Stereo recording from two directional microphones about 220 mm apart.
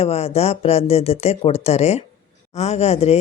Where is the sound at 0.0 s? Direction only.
30° left (ahead or behind).